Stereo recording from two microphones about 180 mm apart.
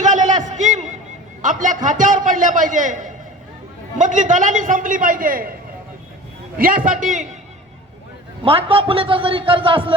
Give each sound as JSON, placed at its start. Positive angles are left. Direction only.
{"t": 0.0, "sound": "a sound", "side_deg": -45}
{"t": 1.4, "sound": "a man's voice", "side_deg": -45}
{"t": 6.6, "sound": "a man's voice", "side_deg": -50}
{"t": 8.4, "sound": "a man's voice", "side_deg": -30}